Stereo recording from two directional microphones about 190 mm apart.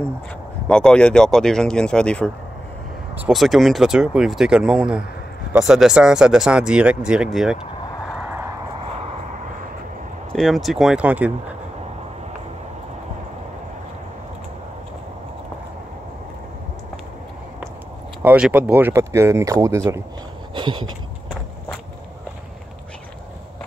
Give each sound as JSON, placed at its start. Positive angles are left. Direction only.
{"t": 0.7, "sound": "speech", "side_deg": 5}
{"t": 10.3, "sound": "speech", "side_deg": 0}
{"t": 18.2, "sound": "speech", "side_deg": -10}
{"t": 20.5, "sound": "a sound", "side_deg": -25}